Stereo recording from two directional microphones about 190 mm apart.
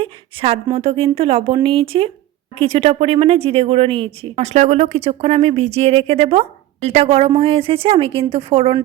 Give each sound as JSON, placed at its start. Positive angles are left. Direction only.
{"t": 0.0, "sound": "speech", "side_deg": -30}